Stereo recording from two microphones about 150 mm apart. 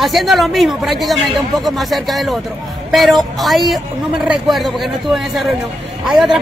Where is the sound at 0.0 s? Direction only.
Centre (ahead or behind).